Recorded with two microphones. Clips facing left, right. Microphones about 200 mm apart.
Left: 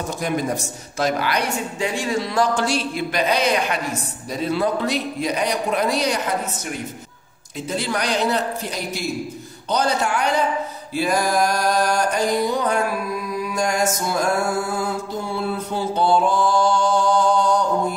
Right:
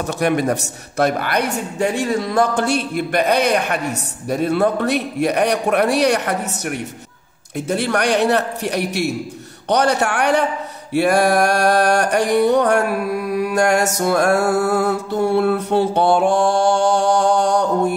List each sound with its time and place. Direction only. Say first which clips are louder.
0.2 s a man's voice: right 6 dB; 65° right (ahead or behind)
10.9 s music: right 6 dB; 65° right (ahead or behind)